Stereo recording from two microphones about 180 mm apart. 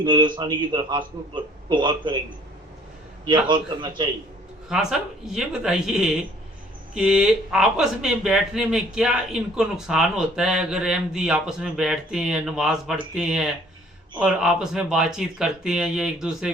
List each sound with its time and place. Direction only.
0.0 s a man's voice: 25° right (ahead or behind)
3.2 s a man's voice: 25° right (ahead or behind)
4.7 s speech: 5° right (ahead or behind)